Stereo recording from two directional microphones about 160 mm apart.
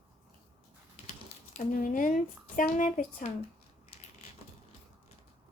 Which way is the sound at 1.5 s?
55° left (ahead or behind).